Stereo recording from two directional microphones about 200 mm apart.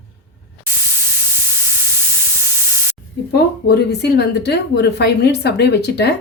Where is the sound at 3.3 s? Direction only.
55° left (ahead or behind).